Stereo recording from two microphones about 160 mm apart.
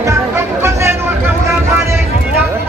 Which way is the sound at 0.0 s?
15° right (ahead or behind).